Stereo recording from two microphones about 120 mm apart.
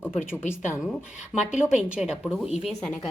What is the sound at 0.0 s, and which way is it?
Speech, 15° left (ahead or behind).